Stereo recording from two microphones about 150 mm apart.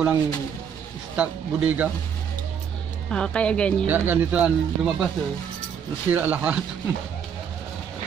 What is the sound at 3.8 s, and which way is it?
Speech, 15° right (ahead or behind).